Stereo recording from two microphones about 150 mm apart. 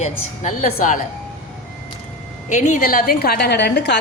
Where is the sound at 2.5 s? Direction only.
55° left (ahead or behind); by 3.8 s 90° left.